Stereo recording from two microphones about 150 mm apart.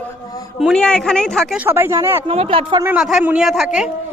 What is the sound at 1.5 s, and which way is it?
Speech, 15° right (ahead or behind).